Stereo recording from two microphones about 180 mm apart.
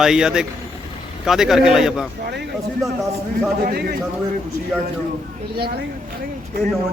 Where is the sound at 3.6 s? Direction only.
60° right (ahead or behind).